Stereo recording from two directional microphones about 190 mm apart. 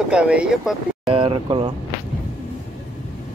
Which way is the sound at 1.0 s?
30° right (ahead or behind).